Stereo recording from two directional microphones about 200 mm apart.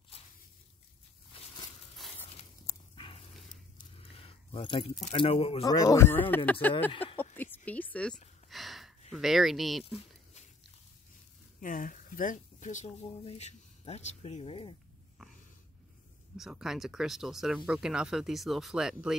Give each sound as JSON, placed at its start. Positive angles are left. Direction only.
{"t": 2.3, "sound": "a sound", "side_deg": 30}
{"t": 3.9, "sound": "keys jangling", "side_deg": 30}
{"t": 5.0, "sound": "speech", "side_deg": 30}
{"t": 5.6, "sound": "speech", "side_deg": 15}
{"t": 6.9, "sound": "speech", "side_deg": 25}
{"t": 7.3, "sound": "a sound", "side_deg": 10}
{"t": 7.9, "sound": "speech", "side_deg": 5}
{"t": 8.5, "sound": "a sound", "side_deg": 0}
{"t": 9.1, "sound": "speech", "side_deg": 0}
{"t": 11.6, "sound": "speech", "side_deg": 40}
{"t": 16.3, "sound": "speech", "side_deg": 0}